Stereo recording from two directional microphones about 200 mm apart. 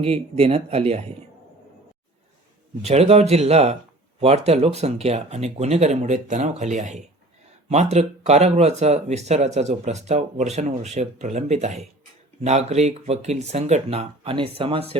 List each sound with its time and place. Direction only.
0.0 s speech: 30° right (ahead or behind)
2.8 s speech: 30° right (ahead or behind)